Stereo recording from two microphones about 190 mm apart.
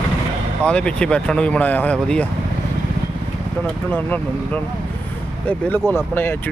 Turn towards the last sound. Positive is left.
turn(degrees=10)  # may be behind; listen again after turning